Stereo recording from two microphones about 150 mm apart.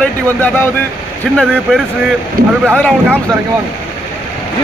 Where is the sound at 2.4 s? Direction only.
70° right (ahead or behind).